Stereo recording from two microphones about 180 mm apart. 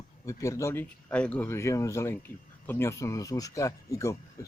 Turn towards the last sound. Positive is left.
turn(degrees=20)  # may be behind; listen again after turning